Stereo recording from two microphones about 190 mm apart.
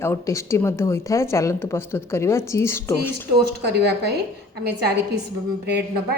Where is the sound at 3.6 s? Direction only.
60° right (ahead or behind).